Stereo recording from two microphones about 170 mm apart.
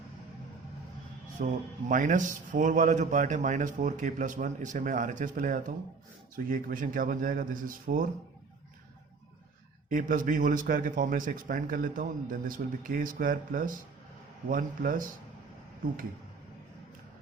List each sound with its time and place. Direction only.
1.4 s a man's voice: 55° right (ahead or behind)
9.9 s a man's voice: 55° right (ahead or behind)